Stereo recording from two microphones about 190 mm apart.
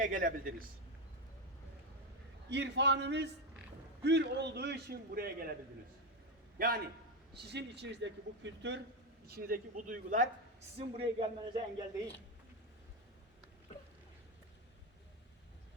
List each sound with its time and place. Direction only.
0.0 s a man's voice: 45° right (ahead or behind)
2.5 s a man's voice: 65° right (ahead or behind)
6.6 s a man's voice: 55° right (ahead or behind)
7.5 s speech: 65° right (ahead or behind)
9.2 s a man's voice: 50° right (ahead or behind)
10.8 s speech: 30° right (ahead or behind)